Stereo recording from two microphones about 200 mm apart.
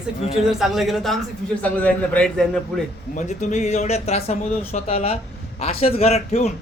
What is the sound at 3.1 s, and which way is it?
A man's voice, 35° left (ahead or behind).